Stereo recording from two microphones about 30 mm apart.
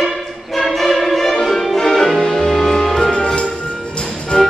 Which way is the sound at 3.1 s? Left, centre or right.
Left.